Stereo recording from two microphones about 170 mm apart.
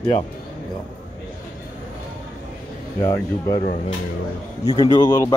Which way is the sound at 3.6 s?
45° left (ahead or behind).